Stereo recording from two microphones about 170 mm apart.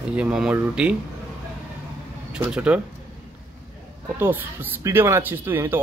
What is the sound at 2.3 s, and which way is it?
Speech, 5° right (ahead or behind).